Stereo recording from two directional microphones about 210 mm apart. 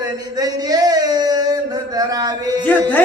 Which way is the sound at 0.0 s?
20° right (ahead or behind).